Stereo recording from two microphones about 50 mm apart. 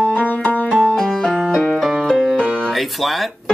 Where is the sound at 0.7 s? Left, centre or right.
Centre.